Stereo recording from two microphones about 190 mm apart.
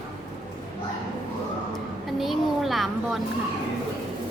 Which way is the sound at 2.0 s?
Centre (ahead or behind).